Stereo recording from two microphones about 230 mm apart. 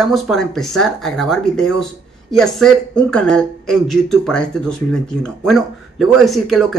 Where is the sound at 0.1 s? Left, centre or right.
Centre.